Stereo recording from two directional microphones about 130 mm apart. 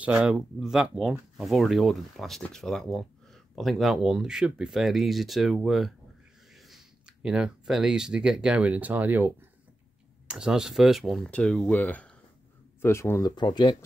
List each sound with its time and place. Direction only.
0.0 s speech: 10° right (ahead or behind)
7.2 s speech: 5° right (ahead or behind); by 13.3 s 20° left (ahead or behind)
13.4 s speech: 35° left (ahead or behind)